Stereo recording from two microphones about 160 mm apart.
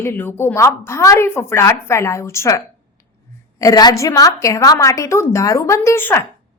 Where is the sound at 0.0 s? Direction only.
15° left (ahead or behind).